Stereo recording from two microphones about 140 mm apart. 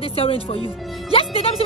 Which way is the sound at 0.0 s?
40° left (ahead or behind).